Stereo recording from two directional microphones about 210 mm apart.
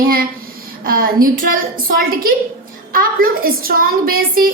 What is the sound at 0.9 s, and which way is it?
Speech, 45° right (ahead or behind).